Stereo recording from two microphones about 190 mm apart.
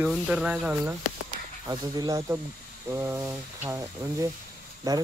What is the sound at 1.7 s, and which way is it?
Speech, 20° right (ahead or behind).